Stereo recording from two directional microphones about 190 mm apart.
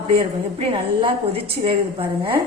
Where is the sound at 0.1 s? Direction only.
30° right (ahead or behind).